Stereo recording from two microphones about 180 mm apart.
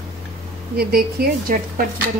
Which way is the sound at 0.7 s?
60° right (ahead or behind).